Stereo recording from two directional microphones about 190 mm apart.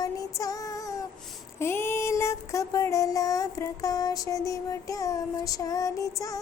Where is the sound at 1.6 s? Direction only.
10° left (ahead or behind).